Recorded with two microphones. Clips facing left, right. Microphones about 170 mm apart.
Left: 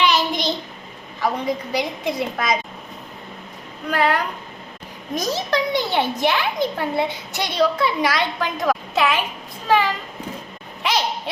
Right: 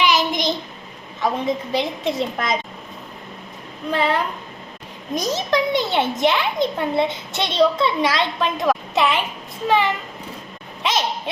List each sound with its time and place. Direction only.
0.0 s child singing: 10° right (ahead or behind)
1.2 s a child's voice: 25° right (ahead or behind)
3.8 s a child's voice: 25° right (ahead or behind)